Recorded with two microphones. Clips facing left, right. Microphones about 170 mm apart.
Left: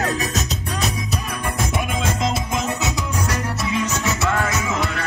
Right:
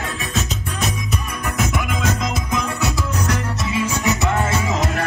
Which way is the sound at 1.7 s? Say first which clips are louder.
Right 1 dB; 25° left (ahead or behind).